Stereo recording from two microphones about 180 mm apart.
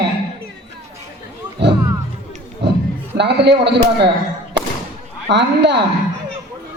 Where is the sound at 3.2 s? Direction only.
70° right (ahead or behind).